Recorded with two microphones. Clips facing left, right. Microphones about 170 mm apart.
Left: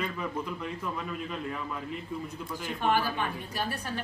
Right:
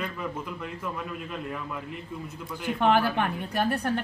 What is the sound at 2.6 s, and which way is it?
A woman's voice, 60° right (ahead or behind).